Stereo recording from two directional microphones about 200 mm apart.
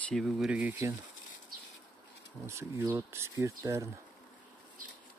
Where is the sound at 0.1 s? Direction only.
Centre (ahead or behind).